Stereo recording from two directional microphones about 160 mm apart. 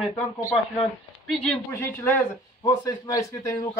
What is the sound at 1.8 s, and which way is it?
A man's voice, 15° left (ahead or behind).